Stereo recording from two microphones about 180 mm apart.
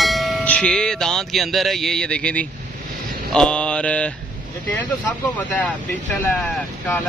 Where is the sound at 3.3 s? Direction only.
5° left (ahead or behind).